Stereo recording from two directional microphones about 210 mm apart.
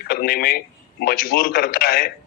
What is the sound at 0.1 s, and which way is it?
Speech, 45° left (ahead or behind).